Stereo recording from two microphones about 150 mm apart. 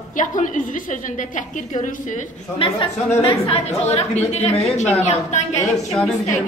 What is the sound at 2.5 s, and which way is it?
A woman's voice, 35° left (ahead or behind).